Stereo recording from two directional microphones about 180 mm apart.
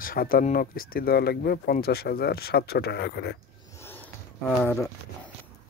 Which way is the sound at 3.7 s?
15° left (ahead or behind).